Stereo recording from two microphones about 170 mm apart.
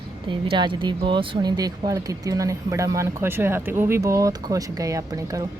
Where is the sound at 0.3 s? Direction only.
30° right (ahead or behind).